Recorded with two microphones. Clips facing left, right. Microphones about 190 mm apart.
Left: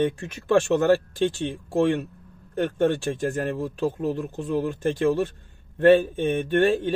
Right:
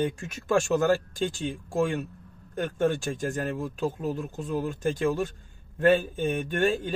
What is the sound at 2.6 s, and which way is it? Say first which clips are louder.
Speech: left 4 dB; 35° left (ahead or behind).